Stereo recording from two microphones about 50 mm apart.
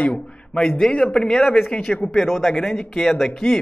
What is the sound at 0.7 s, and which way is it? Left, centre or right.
A woman's voice, centre.